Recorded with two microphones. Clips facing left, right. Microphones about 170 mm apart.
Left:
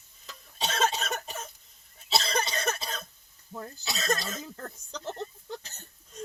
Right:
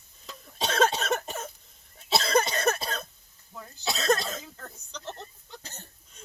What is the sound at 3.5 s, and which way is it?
Cough, 45° left (ahead or behind).